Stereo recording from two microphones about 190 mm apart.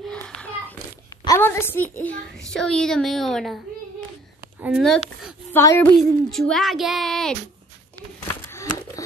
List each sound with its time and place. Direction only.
0.1 s a sound: 5° left (ahead or behind)
1.2 s a woman's voice: 15° left (ahead or behind)
5.5 s a woman's voice: 15° left (ahead or behind)
5.9 s a child's voice: centre (ahead or behind)
8.5 s crumpling: 15° left (ahead or behind)